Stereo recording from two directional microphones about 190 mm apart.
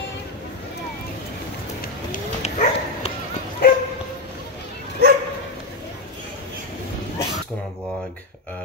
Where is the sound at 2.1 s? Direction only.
35° left (ahead or behind).